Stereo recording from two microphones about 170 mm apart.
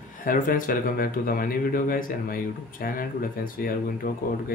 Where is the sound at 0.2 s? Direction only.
55° left (ahead or behind).